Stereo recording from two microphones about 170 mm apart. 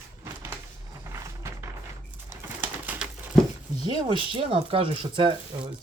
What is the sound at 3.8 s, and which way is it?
Speech, 25° right (ahead or behind).